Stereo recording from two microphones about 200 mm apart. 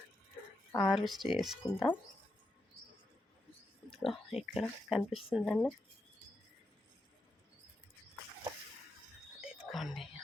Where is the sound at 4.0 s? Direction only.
Centre (ahead or behind).